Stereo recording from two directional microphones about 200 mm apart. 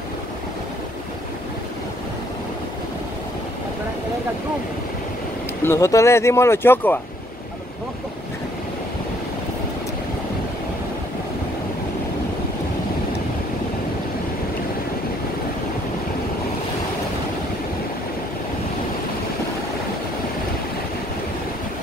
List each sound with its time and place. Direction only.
5.6 s speech: 15° left (ahead or behind)